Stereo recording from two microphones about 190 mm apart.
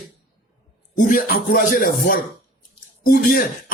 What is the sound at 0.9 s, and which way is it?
Speech, 50° left (ahead or behind).